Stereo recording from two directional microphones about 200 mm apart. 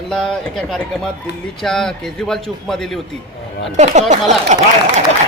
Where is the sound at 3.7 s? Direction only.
35° right (ahead or behind).